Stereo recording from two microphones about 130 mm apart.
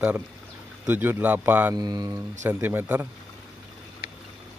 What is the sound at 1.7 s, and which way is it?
Speech, 30° right (ahead or behind).